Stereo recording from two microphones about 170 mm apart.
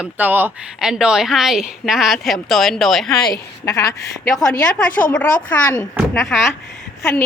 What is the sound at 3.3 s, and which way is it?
Speech, 20° left (ahead or behind).